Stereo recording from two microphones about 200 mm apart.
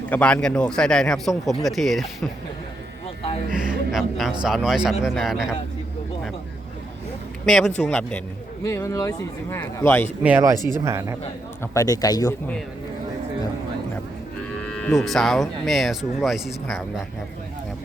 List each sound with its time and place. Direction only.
0.1 s speech: 10° left (ahead or behind)
3.9 s speech: centre (ahead or behind)
7.4 s speech: centre (ahead or behind)
10.2 s speech: 10° right (ahead or behind)
11.6 s speech: 15° left (ahead or behind)
14.6 s speech: 5° left (ahead or behind)